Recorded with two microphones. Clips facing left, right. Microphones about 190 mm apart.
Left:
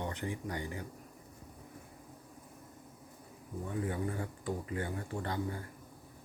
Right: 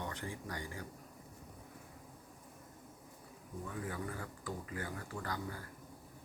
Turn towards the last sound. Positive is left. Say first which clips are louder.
# left 5 dB
turn(degrees=25)  # may be behind; listen again after turning